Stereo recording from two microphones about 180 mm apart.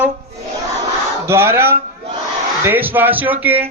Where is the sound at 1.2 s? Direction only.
15° right (ahead or behind).